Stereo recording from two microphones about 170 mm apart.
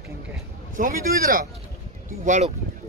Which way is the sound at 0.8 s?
55° right (ahead or behind).